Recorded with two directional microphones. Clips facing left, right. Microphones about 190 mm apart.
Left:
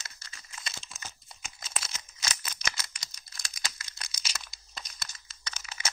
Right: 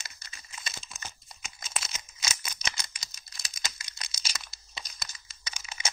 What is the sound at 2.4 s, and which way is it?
Scissors, 15° right (ahead or behind).